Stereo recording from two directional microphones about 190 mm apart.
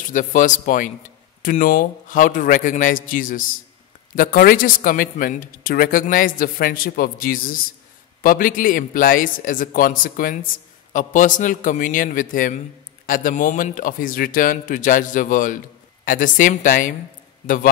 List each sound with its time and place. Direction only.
0.1 s a man's voice: 45° left (ahead or behind)